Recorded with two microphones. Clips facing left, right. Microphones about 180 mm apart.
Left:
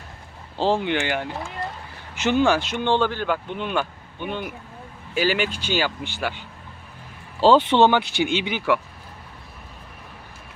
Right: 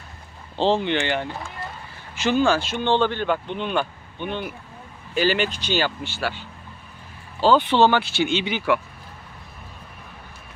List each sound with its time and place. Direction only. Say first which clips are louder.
0.5 s speech: right 1 dB; 5° left (ahead or behind)
2.1 s speech: even; 20° left (ahead or behind)
7.4 s speech: left 1 dB; 25° left (ahead or behind); by 8.6 s 10° left (ahead or behind)